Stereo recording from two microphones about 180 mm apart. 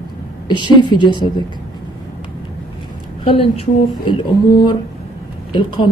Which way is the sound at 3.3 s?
30° left (ahead or behind).